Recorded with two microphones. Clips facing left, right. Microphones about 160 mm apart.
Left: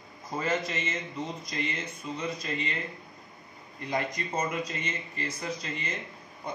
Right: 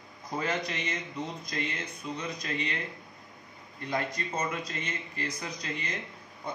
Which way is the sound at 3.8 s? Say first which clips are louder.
Left 1 dB; 5° left (ahead or behind).